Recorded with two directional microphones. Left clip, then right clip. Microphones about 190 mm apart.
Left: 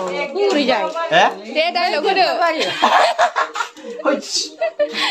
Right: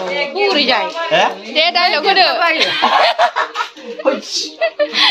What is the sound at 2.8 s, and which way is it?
Speech, 25° left (ahead or behind).